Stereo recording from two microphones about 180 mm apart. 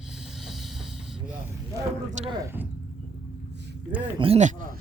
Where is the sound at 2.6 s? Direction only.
10° right (ahead or behind).